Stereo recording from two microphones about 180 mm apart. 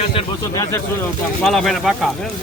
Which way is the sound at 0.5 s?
15° left (ahead or behind).